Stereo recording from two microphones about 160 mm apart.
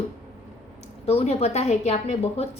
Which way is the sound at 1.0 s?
40° left (ahead or behind).